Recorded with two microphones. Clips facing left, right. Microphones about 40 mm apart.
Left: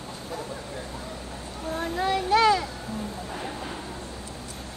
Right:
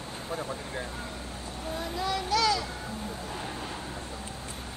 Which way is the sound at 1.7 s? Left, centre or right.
Left.